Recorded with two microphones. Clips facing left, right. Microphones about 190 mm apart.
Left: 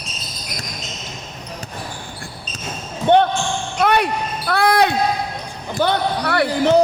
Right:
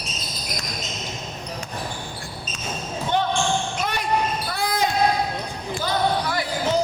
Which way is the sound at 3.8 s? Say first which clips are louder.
Left 11 dB; 65° left (ahead or behind).